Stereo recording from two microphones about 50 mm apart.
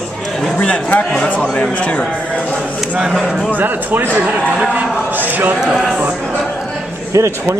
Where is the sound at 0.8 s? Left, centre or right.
Left.